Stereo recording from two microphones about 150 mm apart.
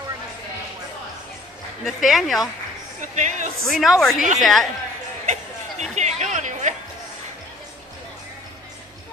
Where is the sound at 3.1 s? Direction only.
55° right (ahead or behind).